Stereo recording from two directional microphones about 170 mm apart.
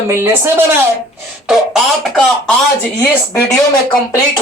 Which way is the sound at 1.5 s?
Centre (ahead or behind).